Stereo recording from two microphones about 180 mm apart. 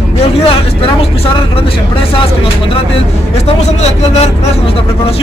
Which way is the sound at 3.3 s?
35° left (ahead or behind).